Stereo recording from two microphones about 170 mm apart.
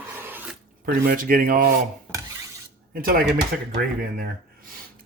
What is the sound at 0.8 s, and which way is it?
Speech, 55° right (ahead or behind).